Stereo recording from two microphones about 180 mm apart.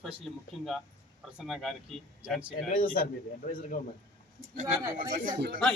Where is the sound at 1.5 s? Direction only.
Centre (ahead or behind).